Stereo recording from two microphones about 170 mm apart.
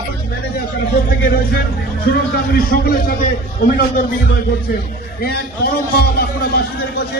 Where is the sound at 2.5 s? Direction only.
55° left (ahead or behind).